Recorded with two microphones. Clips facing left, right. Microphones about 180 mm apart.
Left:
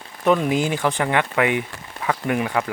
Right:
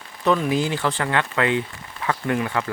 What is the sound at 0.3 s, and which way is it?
Speech, 20° left (ahead or behind).